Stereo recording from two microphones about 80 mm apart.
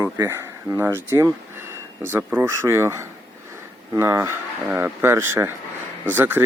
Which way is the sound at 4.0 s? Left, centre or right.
Right.